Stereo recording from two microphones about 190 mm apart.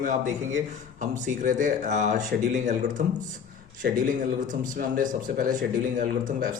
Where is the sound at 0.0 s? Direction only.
40° right (ahead or behind).